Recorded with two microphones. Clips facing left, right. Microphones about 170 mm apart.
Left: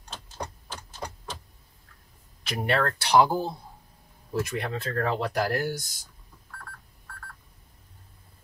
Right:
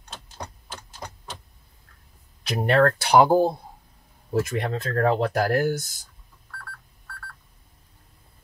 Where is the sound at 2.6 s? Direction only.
45° right (ahead or behind).